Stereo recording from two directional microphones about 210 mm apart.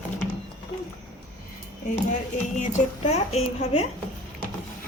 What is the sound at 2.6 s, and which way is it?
A woman's voice, 35° left (ahead or behind).